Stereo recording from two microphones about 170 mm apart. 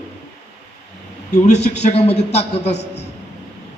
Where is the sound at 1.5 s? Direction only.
75° left (ahead or behind).